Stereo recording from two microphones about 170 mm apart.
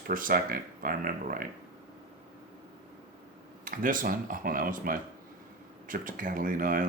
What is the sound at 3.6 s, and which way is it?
Speech, 55° right (ahead or behind).